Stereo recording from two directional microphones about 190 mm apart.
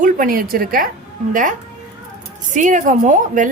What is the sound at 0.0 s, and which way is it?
A woman's voice, 45° right (ahead or behind).